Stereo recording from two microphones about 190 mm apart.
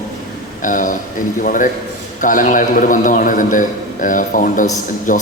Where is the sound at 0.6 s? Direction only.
45° left (ahead or behind).